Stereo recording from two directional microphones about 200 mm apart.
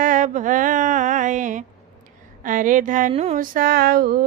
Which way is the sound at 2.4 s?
40° right (ahead or behind).